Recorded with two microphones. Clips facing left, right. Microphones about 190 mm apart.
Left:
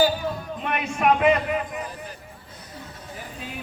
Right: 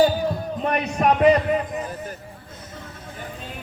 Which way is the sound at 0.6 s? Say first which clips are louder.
Right 2 dB; 40° right (ahead or behind).